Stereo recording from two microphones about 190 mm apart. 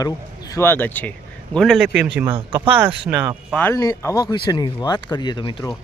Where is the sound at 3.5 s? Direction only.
15° left (ahead or behind).